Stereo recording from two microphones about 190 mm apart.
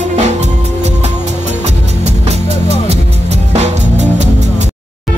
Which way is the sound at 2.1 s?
35° right (ahead or behind).